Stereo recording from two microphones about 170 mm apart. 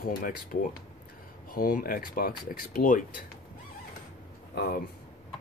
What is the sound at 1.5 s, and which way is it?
Speech, 60° left (ahead or behind).